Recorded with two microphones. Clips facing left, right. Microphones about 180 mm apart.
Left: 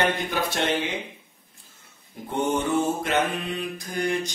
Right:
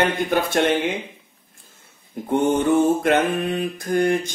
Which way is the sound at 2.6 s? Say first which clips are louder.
Right 7 dB; 55° right (ahead or behind).